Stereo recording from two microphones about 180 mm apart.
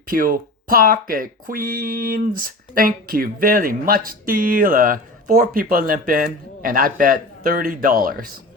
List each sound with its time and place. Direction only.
0.0 s speech: 50° right (ahead or behind)